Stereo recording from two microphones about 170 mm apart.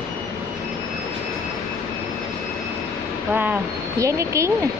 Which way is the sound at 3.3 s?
10° right (ahead or behind).